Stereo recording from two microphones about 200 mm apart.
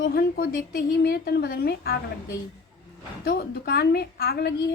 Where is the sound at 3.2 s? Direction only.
55° left (ahead or behind).